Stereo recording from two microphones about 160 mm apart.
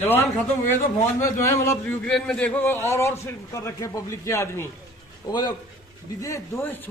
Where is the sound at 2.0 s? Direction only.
5° left (ahead or behind).